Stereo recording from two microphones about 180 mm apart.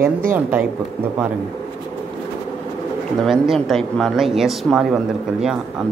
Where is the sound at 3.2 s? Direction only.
Centre (ahead or behind).